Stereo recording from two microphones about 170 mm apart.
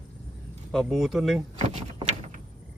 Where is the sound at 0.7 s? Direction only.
Centre (ahead or behind).